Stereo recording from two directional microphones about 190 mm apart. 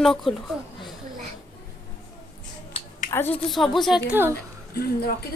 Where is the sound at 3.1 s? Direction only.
20° left (ahead or behind).